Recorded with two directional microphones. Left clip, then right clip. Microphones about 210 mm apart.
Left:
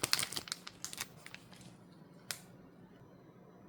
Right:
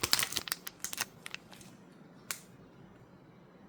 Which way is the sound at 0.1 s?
15° right (ahead or behind).